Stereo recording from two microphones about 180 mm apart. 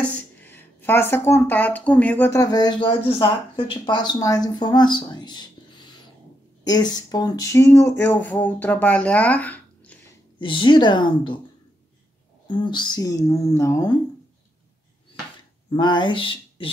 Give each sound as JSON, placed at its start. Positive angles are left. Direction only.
{"t": 0.0, "sound": "speech", "side_deg": 10}
{"t": 2.4, "sound": "speech", "side_deg": 20}
{"t": 10.4, "sound": "speech", "side_deg": 25}
{"t": 12.4, "sound": "speech", "side_deg": 25}
{"t": 15.7, "sound": "speech", "side_deg": 25}